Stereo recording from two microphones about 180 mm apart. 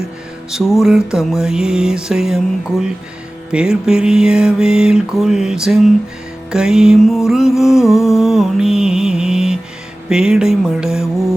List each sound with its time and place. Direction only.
0.5 s music: 5° right (ahead or behind)